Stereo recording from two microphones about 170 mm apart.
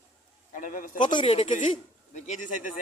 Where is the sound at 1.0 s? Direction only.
30° left (ahead or behind).